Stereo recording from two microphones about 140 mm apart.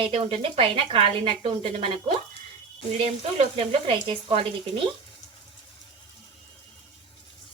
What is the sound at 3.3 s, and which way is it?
Speech, 45° right (ahead or behind).